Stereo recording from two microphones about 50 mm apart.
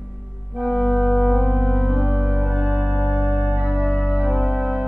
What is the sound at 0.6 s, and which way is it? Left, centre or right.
Organ, centre.